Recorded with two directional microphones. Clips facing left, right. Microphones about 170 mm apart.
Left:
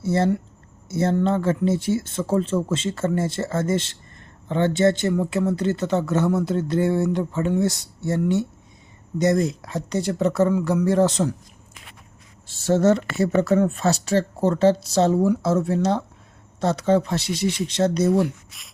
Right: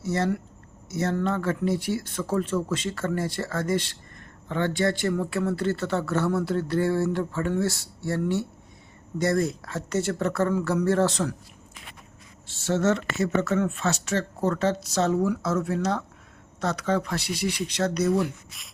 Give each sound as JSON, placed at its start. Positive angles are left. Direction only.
{"t": 0.0, "sound": "speech", "side_deg": 30}
{"t": 12.5, "sound": "speech", "side_deg": 40}
{"t": 18.5, "sound": "beatboxing", "side_deg": 0}